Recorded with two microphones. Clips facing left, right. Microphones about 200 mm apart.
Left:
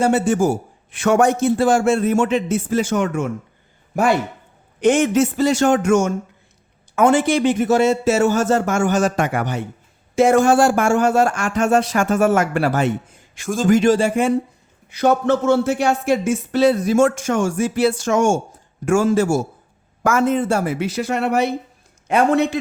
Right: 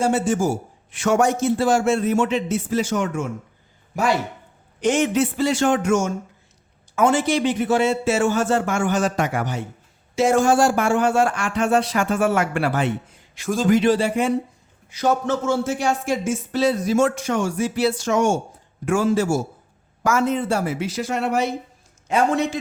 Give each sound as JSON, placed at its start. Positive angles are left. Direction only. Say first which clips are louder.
{"t": 0.0, "sound": "a man's voice", "louder": "left 3 dB", "side_deg": 65}
{"t": 14.8, "sound": "a man's voice", "louder": "left 4 dB", "side_deg": 60}